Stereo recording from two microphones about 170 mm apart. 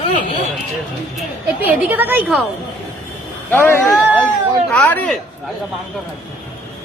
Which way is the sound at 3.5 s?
10° left (ahead or behind).